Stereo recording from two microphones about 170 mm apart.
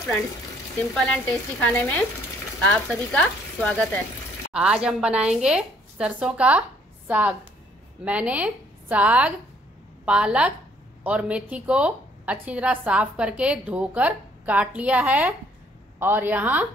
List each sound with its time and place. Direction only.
0.9 s a woman's voice: centre (ahead or behind)
4.5 s a woman's voice: 5° right (ahead or behind)